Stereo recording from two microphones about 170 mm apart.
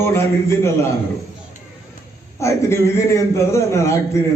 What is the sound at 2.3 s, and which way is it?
A man's voice, 15° left (ahead or behind).